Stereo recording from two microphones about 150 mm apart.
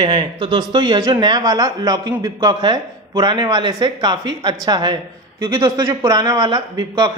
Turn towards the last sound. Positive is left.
turn(degrees=-30)  # may be behind; listen again after turning